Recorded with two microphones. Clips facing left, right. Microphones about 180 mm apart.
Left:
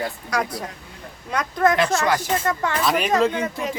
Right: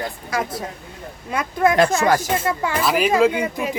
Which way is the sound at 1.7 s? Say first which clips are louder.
Right 4 dB; 45° right (ahead or behind).